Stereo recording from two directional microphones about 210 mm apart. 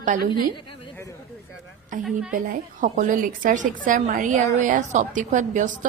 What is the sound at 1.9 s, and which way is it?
A woman's voice, 40° right (ahead or behind).